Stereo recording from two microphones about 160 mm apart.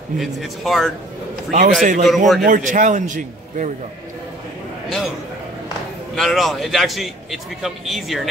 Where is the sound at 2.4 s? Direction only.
55° right (ahead or behind).